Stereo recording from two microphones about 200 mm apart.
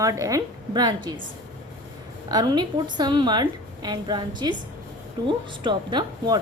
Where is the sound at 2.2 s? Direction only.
20° right (ahead or behind).